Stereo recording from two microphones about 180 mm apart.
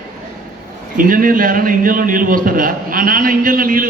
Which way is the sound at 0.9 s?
50° right (ahead or behind).